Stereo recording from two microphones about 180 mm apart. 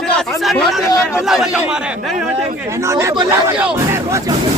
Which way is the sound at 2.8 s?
15° right (ahead or behind).